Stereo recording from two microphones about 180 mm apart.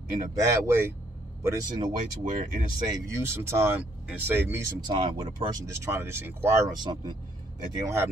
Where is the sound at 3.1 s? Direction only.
15° right (ahead or behind).